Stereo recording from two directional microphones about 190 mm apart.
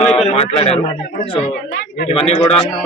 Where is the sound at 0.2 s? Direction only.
30° left (ahead or behind).